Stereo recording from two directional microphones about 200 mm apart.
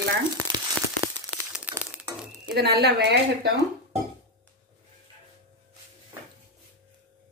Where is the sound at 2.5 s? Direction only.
55° right (ahead or behind).